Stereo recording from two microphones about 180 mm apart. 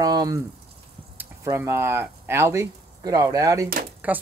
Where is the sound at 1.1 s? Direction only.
10° right (ahead or behind).